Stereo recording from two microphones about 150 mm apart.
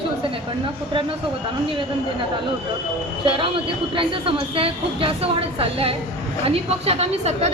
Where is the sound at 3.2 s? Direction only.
35° right (ahead or behind).